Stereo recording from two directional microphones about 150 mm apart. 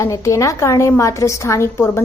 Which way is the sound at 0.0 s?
20° left (ahead or behind).